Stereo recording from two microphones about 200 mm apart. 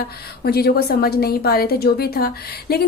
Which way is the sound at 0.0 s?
50° left (ahead or behind).